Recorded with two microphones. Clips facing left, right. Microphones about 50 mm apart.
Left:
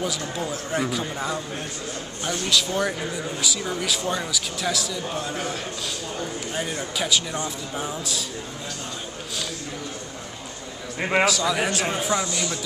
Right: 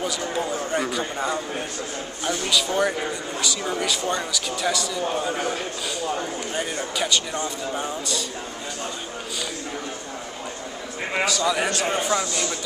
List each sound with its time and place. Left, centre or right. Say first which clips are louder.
0.0 s a man's voice: right 2 dB; centre
11.0 s a man's voice: left 4 dB; centre
11.2 s a man's voice: even; centre